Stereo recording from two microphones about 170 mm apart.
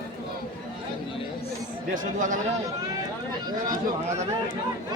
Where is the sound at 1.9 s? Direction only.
50° right (ahead or behind).